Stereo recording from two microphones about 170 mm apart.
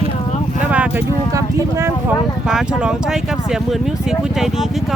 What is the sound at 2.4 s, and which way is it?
Speech, 5° right (ahead or behind).